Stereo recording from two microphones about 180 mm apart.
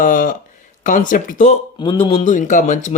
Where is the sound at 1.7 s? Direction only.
25° left (ahead or behind).